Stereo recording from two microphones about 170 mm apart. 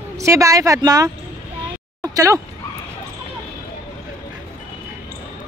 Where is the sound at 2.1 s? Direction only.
20° right (ahead or behind).